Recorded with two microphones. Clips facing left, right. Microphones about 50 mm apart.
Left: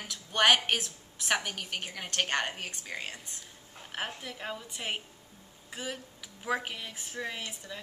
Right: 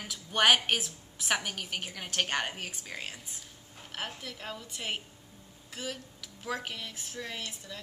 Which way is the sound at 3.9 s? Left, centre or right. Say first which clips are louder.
Left 2 dB; centre.